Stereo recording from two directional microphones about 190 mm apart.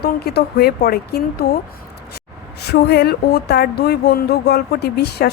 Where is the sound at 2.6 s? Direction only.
60° left (ahead or behind).